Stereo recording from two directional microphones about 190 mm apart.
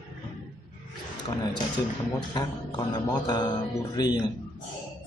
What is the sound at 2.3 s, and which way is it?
Speech, 25° left (ahead or behind).